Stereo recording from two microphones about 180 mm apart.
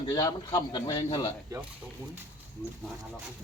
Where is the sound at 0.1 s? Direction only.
20° left (ahead or behind).